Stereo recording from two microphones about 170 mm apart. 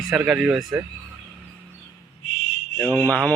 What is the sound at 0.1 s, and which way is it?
Speech, 5° right (ahead or behind).